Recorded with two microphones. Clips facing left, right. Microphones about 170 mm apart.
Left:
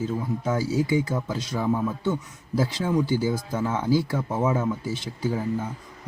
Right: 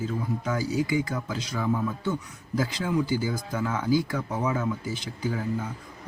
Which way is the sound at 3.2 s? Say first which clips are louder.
Left 3 dB; 25° left (ahead or behind).